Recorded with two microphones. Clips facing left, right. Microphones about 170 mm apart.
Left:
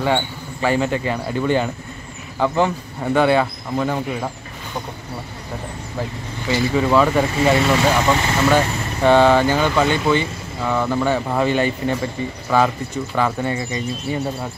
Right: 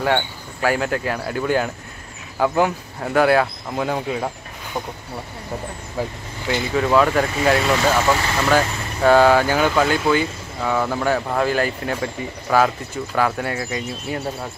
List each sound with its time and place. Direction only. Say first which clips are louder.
0.0 s speech: left 1 dB; 5° right (ahead or behind)
6.5 s speech: left 1 dB; 5° left (ahead or behind)